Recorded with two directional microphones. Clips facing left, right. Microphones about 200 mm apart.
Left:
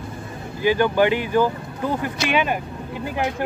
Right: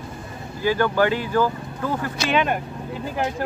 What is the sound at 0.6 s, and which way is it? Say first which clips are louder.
Speech: left 2 dB; 15° left (ahead or behind).